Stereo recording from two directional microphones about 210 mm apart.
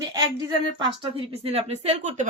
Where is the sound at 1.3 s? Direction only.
30° right (ahead or behind).